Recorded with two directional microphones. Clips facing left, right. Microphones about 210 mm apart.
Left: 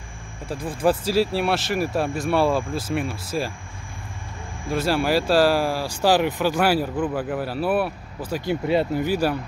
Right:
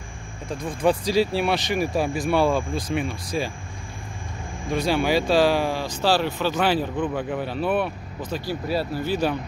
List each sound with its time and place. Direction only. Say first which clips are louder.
0.5 s speech: left 1 dB; 5° left (ahead or behind)
4.6 s speech: even; 5° left (ahead or behind)
8.5 s speech: left 6 dB; 20° left (ahead or behind)